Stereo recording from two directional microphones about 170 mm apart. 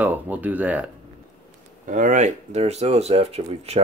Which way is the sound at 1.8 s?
50° right (ahead or behind).